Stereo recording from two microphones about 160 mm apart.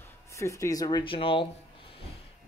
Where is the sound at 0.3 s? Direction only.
20° left (ahead or behind); by 1.5 s 35° left (ahead or behind).